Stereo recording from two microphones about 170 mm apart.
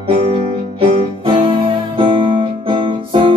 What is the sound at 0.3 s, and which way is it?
Music, 30° right (ahead or behind).